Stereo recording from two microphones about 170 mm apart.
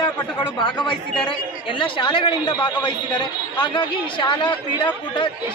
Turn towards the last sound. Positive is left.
turn(degrees=30)  # may be behind; listen again after turning